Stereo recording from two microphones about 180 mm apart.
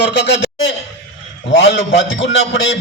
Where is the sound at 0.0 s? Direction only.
75° left (ahead or behind).